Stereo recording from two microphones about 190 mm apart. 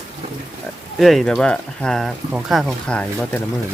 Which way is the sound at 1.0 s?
Centre (ahead or behind).